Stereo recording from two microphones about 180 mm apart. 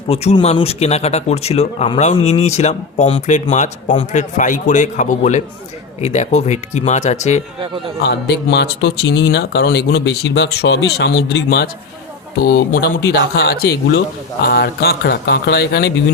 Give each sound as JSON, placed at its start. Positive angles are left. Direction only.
{"t": 0.1, "sound": "speech", "side_deg": 35}
{"t": 8.0, "sound": "speech", "side_deg": 70}